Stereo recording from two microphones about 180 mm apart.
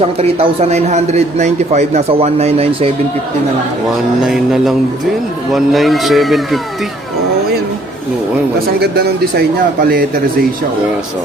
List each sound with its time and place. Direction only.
0.2 s a man's voice: 35° right (ahead or behind)
4.3 s speech: centre (ahead or behind)
8.8 s speech: 60° right (ahead or behind)